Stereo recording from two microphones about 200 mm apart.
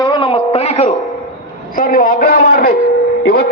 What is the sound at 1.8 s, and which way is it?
A man's voice, 45° left (ahead or behind).